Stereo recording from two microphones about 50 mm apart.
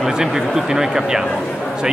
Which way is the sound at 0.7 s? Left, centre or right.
Centre.